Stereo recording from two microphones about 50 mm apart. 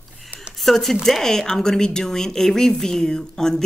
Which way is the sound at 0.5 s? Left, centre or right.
Centre.